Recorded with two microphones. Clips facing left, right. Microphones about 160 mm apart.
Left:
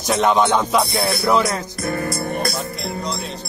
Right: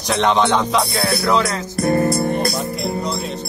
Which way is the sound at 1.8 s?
35° right (ahead or behind).